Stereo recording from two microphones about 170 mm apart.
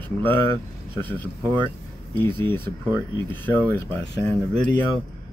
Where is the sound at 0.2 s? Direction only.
15° left (ahead or behind).